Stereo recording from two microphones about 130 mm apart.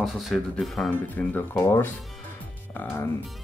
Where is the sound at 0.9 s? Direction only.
15° left (ahead or behind).